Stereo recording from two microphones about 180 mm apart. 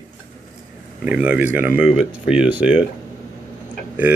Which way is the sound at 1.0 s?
10° right (ahead or behind).